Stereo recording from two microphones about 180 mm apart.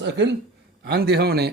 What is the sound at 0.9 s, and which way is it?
Speech, 65° right (ahead or behind).